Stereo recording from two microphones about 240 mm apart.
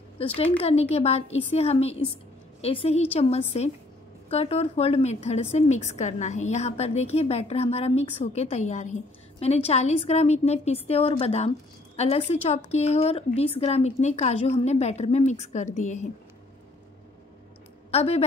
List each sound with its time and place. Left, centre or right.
0.4 s a woman's voice: left
17.9 s a woman's voice: left